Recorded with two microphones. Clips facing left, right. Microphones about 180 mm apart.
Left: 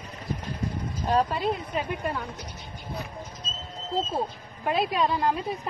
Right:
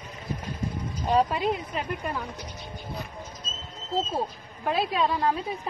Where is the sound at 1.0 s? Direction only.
10° right (ahead or behind).